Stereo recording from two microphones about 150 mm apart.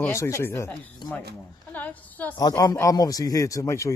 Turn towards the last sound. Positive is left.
turn(degrees=20)  # may be behind; listen again after turning